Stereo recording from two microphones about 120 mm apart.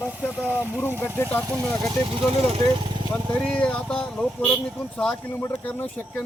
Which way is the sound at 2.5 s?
50° right (ahead or behind).